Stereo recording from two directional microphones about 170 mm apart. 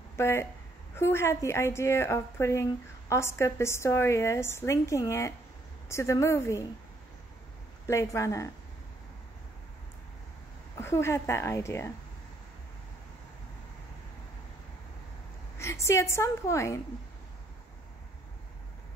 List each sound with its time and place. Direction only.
0.1 s a woman's voice: 15° left (ahead or behind)
7.8 s a woman's voice: 15° left (ahead or behind)
10.8 s a woman's voice: 15° left (ahead or behind)
15.5 s a woman's voice: 15° left (ahead or behind)